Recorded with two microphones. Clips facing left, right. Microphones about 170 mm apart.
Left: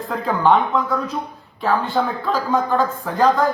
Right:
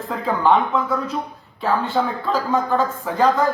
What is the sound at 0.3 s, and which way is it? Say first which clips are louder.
Speech: left 1 dB; 5° right (ahead or behind).